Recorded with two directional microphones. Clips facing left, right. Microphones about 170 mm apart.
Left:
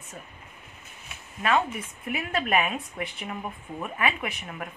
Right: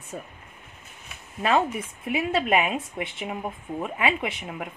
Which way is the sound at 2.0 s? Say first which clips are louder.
Right 4 dB; 20° right (ahead or behind).